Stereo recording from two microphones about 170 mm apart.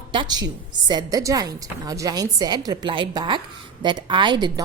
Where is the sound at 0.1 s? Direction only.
25° right (ahead or behind).